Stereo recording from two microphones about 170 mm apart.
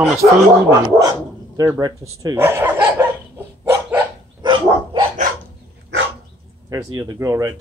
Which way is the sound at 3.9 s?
25° right (ahead or behind).